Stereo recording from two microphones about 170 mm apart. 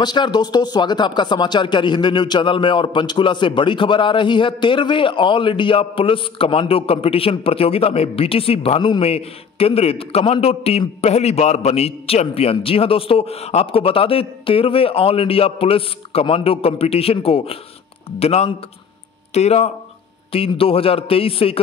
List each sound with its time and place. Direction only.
0.0 s speech: 25° left (ahead or behind)